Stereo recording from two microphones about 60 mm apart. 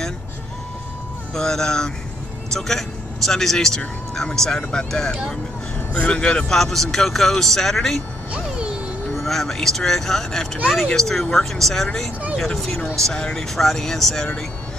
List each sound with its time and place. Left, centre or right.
1.3 s a man's voice: centre
6.5 s speech: centre
8.3 s music: centre
9.2 s a man's voice: centre